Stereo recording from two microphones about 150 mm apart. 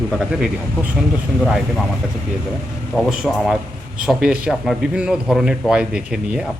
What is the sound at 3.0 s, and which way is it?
Speech, 5° right (ahead or behind).